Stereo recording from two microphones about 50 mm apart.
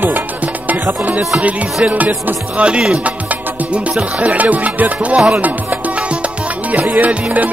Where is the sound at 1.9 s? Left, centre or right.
Right.